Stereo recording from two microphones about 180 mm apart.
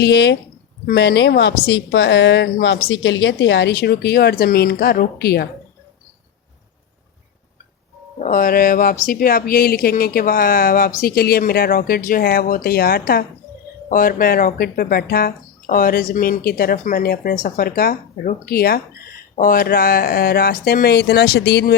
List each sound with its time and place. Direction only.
0.0 s a woman's voice: 70° left (ahead or behind)
8.2 s speech: 50° left (ahead or behind); by 21.8 s 65° left (ahead or behind)